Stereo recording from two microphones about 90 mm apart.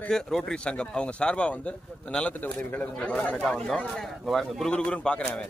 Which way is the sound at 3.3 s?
5° left (ahead or behind).